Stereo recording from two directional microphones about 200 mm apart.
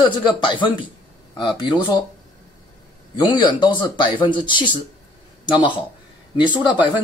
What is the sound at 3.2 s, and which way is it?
Speech, 25° left (ahead or behind).